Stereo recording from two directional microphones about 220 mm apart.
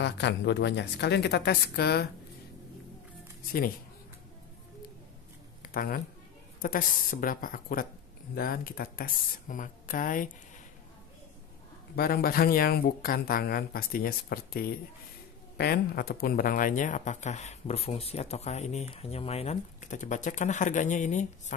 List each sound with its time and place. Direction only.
0.0 s a woman's voice: 50° left (ahead or behind)
5.7 s speech: 40° left (ahead or behind)
11.9 s speech: 45° left (ahead or behind)